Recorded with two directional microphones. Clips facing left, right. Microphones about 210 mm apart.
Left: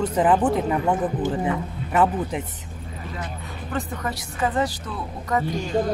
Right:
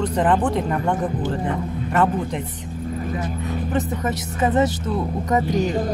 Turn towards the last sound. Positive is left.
turn(degrees=-20)  # may be behind; listen again after turning